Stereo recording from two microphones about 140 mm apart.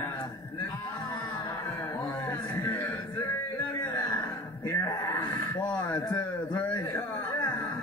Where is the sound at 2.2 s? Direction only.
25° left (ahead or behind).